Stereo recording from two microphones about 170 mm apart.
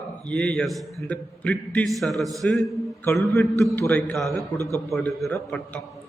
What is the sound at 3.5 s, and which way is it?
Speech, 15° left (ahead or behind).